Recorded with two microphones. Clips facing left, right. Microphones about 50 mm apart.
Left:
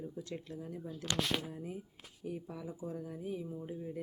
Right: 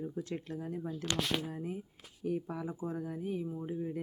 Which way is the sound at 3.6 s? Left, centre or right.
Right.